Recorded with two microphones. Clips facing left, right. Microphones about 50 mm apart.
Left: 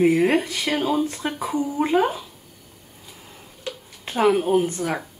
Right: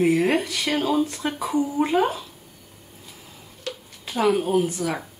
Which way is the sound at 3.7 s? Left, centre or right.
Centre.